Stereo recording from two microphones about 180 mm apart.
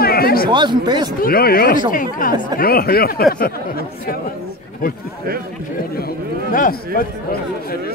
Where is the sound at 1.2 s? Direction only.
55° left (ahead or behind).